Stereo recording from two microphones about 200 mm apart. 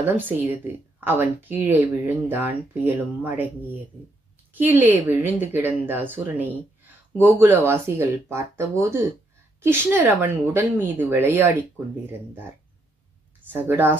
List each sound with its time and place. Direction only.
0.0 s speech: 10° right (ahead or behind)